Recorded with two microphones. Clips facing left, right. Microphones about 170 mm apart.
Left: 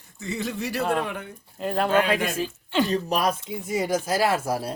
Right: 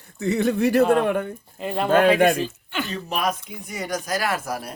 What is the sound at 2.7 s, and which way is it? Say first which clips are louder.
Speech: left 5 dB; 30° left (ahead or behind).